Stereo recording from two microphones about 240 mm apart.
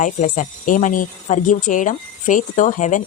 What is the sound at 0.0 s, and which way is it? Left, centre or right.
Speech, left.